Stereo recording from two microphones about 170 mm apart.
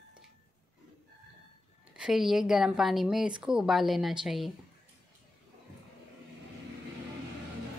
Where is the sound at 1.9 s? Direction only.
5° right (ahead or behind).